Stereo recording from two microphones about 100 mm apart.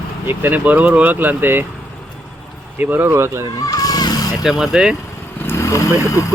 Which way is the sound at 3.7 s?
40° left (ahead or behind).